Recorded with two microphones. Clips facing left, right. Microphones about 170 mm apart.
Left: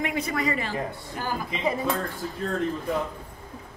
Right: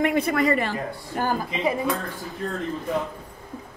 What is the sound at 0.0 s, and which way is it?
A man's voice, 60° right (ahead or behind).